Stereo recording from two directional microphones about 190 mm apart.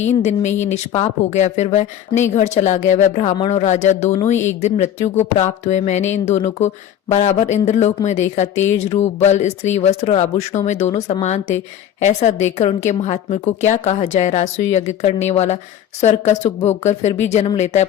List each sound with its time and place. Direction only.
0.0 s speech: 35° left (ahead or behind)